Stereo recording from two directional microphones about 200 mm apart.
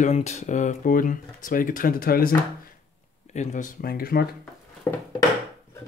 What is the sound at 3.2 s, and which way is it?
Speech, 35° left (ahead or behind).